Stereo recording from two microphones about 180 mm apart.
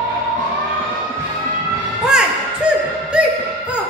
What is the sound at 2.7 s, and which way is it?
Music, 5° right (ahead or behind).